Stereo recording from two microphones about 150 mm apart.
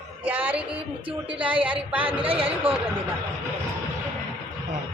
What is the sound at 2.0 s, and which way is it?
Speech, 35° right (ahead or behind).